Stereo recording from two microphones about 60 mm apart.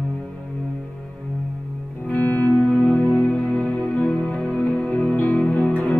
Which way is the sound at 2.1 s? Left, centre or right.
Left.